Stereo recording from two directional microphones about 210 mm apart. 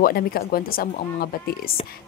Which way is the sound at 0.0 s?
45° left (ahead or behind).